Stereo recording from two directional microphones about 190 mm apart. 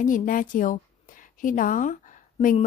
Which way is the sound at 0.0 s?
45° left (ahead or behind).